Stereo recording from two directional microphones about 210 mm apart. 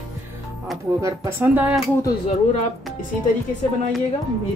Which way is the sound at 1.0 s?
10° right (ahead or behind).